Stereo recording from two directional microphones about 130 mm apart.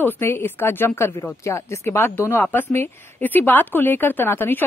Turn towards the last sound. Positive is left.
turn(degrees=15)  # may be behind; listen again after turning